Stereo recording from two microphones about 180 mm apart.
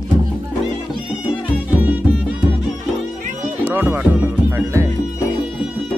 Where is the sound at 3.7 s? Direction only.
10° right (ahead or behind).